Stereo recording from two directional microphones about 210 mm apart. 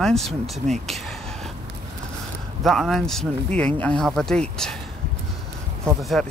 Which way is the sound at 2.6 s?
Centre (ahead or behind).